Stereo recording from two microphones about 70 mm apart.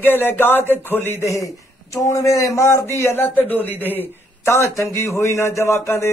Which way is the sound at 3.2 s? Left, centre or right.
Left.